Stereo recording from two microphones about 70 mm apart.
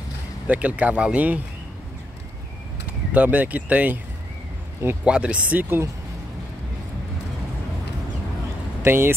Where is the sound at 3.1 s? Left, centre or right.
Right.